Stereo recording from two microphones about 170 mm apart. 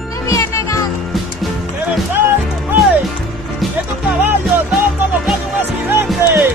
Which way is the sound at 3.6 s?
Centre (ahead or behind).